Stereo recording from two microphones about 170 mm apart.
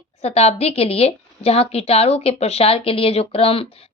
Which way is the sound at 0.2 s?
40° left (ahead or behind).